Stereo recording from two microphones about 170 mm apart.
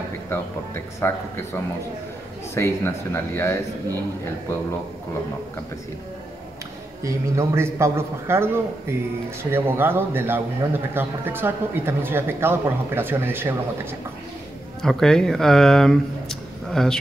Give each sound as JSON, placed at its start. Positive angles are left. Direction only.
{"t": 1.0, "sound": "speech", "side_deg": 15}
{"t": 2.5, "sound": "speech", "side_deg": 15}
{"t": 7.0, "sound": "speech", "side_deg": -15}
{"t": 14.8, "sound": "speech", "side_deg": 0}